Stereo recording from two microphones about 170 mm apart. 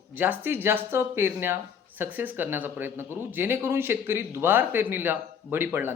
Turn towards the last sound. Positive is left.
turn(degrees=-10)  # may be behind; listen again after turning